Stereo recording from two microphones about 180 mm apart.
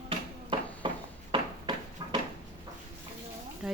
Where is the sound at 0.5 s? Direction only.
30° right (ahead or behind).